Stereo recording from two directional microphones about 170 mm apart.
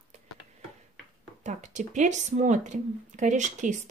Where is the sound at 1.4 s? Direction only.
45° right (ahead or behind).